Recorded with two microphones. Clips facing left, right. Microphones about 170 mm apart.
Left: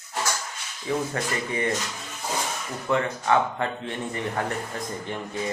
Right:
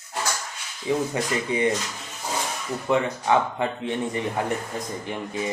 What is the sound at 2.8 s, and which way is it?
Speech, 15° right (ahead or behind).